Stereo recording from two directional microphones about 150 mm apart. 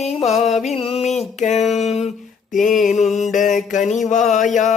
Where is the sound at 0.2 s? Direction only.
45° left (ahead or behind).